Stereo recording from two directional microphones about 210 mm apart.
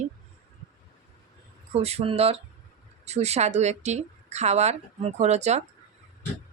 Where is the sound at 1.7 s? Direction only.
30° right (ahead or behind).